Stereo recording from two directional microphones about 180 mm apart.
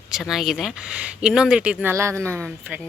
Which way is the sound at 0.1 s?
Centre (ahead or behind).